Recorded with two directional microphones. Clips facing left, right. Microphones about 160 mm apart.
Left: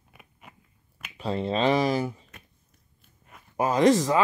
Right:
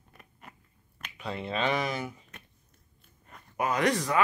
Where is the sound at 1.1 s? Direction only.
35° left (ahead or behind).